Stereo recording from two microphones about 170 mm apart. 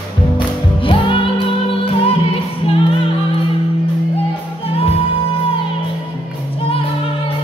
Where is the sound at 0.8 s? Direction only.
30° left (ahead or behind).